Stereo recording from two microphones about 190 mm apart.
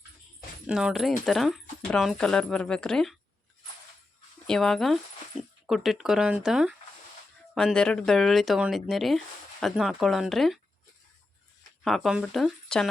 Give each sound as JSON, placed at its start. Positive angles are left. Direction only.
{"t": 0.7, "sound": "speech", "side_deg": -5}
{"t": 4.4, "sound": "speech", "side_deg": 5}
{"t": 11.8, "sound": "speech", "side_deg": 0}